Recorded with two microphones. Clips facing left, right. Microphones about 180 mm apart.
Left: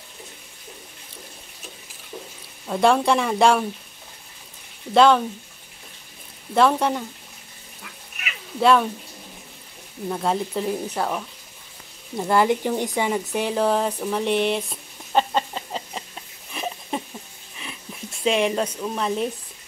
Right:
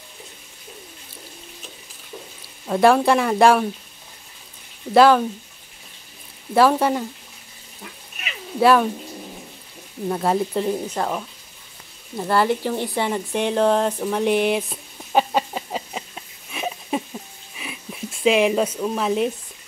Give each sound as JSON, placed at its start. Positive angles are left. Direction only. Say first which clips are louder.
{"t": 2.6, "sound": "speech", "louder": "right 3 dB", "side_deg": 0}
{"t": 4.9, "sound": "speech", "louder": "right 2 dB", "side_deg": -5}
{"t": 6.5, "sound": "speech", "louder": "right 2 dB", "side_deg": -5}
{"t": 8.5, "sound": "speech", "louder": "right 2 dB", "side_deg": -5}
{"t": 10.0, "sound": "speech", "louder": "right 3 dB", "side_deg": -5}
{"t": 12.2, "sound": "speech", "louder": "even", "side_deg": 15}
{"t": 14.0, "sound": "a sound", "louder": "right 2 dB", "side_deg": -5}
{"t": 18.2, "sound": "speech", "louder": "right 4 dB", "side_deg": -5}